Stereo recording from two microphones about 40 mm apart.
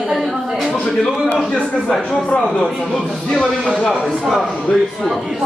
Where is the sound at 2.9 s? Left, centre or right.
Centre.